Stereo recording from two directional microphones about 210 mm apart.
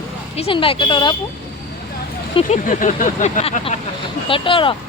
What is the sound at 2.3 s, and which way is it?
Speech, 35° left (ahead or behind).